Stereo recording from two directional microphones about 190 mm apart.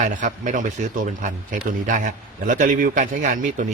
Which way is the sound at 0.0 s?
40° right (ahead or behind).